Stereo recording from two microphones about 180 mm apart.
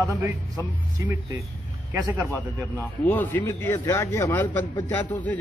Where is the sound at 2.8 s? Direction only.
10° left (ahead or behind).